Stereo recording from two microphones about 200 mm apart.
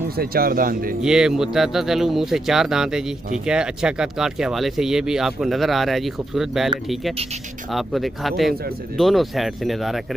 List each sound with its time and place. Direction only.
0.1 s speech: 50° right (ahead or behind)
1.0 s speech: 5° right (ahead or behind)
7.7 s speech: centre (ahead or behind)